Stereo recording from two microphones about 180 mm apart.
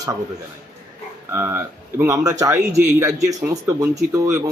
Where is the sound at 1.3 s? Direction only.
15° right (ahead or behind).